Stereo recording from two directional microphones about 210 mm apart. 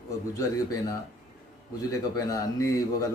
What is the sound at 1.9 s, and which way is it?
Mantra, 15° left (ahead or behind).